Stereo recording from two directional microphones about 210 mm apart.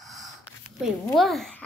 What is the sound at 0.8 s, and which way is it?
Speech, centre (ahead or behind).